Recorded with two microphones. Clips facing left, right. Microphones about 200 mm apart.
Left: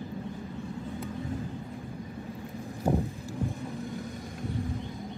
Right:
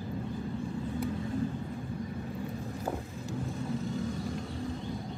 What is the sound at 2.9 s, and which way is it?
Vehicle, 25° left (ahead or behind).